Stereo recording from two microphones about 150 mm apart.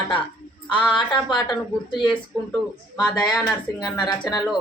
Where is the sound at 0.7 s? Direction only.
35° left (ahead or behind).